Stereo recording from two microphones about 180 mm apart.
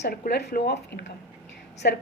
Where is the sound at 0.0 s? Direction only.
65° left (ahead or behind).